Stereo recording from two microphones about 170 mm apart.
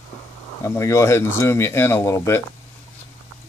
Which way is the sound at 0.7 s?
15° left (ahead or behind).